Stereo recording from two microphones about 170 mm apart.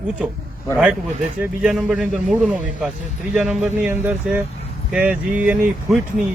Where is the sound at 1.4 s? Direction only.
5° right (ahead or behind).